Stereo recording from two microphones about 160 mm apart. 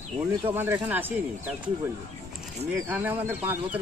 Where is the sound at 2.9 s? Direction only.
10° right (ahead or behind).